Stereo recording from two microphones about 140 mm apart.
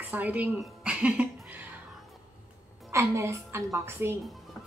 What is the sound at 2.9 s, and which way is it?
A woman's voice, 20° right (ahead or behind).